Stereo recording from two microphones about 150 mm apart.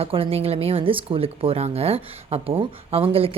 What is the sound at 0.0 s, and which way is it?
Speech, 40° right (ahead or behind).